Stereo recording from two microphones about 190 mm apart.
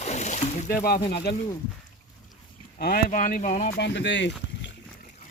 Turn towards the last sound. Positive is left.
turn(degrees=70)  # may be behind; listen again after turning